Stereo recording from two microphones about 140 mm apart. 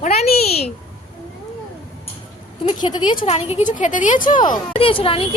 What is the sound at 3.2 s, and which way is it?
A woman's voice, 50° left (ahead or behind).